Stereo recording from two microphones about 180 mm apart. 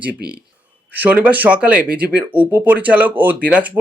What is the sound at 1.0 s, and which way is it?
Speech, 10° right (ahead or behind).